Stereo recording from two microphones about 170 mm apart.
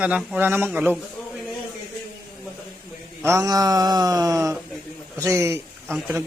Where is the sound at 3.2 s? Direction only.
20° right (ahead or behind).